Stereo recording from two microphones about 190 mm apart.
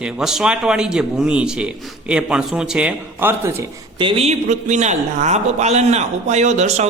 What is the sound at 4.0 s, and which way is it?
A man's voice, 35° right (ahead or behind).